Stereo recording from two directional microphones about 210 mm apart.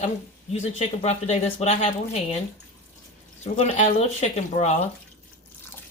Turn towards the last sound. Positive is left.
turn(degrees=30)  # may be behind; listen again after turning